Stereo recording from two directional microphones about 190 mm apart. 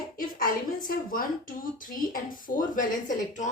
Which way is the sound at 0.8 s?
50° left (ahead or behind).